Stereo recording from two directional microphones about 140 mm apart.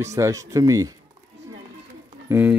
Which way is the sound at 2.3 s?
10° right (ahead or behind).